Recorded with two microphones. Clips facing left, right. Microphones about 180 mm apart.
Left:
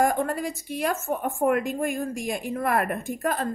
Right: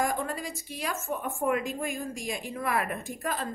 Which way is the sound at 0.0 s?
55° left (ahead or behind).